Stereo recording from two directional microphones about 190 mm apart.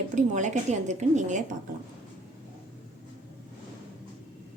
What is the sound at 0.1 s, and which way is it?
Speech, 40° right (ahead or behind).